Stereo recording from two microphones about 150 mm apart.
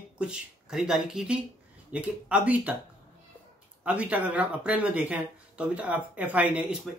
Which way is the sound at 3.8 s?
10° right (ahead or behind).